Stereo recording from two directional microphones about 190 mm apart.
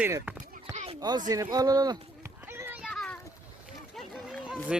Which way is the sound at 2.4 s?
10° right (ahead or behind).